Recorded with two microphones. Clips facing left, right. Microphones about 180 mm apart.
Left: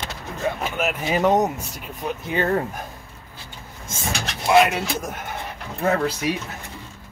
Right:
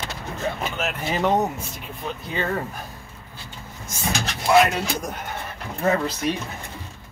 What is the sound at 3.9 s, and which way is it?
Speech, 25° left (ahead or behind).